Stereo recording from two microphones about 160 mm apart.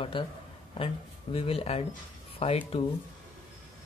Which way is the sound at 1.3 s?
35° left (ahead or behind).